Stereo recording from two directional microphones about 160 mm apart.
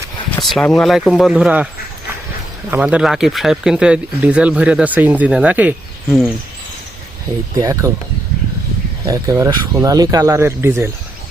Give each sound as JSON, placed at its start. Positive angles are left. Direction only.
{"t": 0.4, "sound": "speech", "side_deg": 0}
{"t": 2.6, "sound": "speech", "side_deg": -10}
{"t": 7.5, "sound": "speech", "side_deg": -20}
{"t": 9.0, "sound": "speech", "side_deg": -20}